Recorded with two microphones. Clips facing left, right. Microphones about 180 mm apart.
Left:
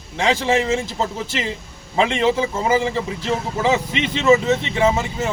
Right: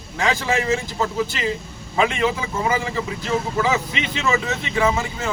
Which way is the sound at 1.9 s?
30° left (ahead or behind).